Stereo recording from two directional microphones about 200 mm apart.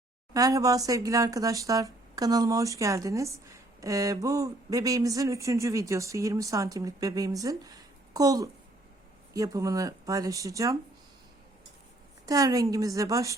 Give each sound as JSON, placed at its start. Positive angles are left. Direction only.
{"t": 0.3, "sound": "speech", "side_deg": -15}
{"t": 12.2, "sound": "speech", "side_deg": -20}